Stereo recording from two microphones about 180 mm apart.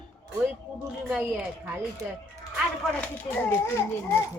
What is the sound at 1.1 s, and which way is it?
Speech, 5° right (ahead or behind).